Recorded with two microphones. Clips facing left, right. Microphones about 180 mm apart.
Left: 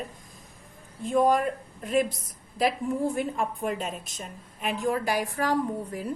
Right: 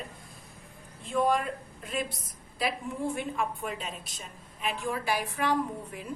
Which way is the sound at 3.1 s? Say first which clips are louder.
Left 3 dB; 45° left (ahead or behind).